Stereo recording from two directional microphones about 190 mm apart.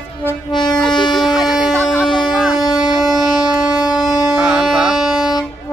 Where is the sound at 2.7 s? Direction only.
20° left (ahead or behind).